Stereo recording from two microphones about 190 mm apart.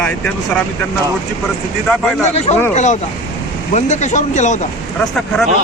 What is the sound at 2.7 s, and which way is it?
Speech, 40° left (ahead or behind).